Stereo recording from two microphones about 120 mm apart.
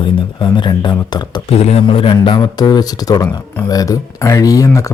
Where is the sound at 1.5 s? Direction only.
55° left (ahead or behind).